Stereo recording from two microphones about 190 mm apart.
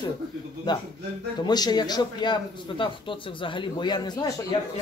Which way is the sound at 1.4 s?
20° left (ahead or behind).